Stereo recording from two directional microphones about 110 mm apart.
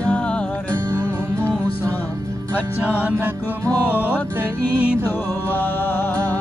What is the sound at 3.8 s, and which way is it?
Music, 15° left (ahead or behind).